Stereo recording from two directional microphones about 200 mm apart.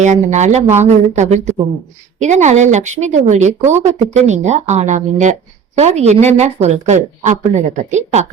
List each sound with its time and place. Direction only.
0.0 s a woman's voice: 35° right (ahead or behind)